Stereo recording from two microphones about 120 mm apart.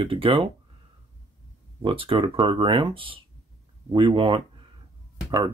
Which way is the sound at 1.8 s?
45° right (ahead or behind).